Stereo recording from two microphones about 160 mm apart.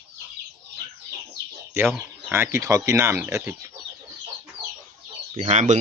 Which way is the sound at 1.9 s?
10° right (ahead or behind).